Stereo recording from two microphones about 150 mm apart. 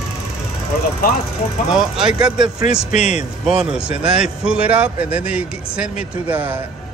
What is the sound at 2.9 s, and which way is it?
Speech, 50° left (ahead or behind).